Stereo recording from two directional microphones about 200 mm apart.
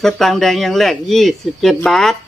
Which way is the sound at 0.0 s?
Centre (ahead or behind).